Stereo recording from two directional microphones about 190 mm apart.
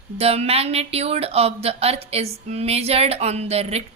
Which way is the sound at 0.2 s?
30° right (ahead or behind).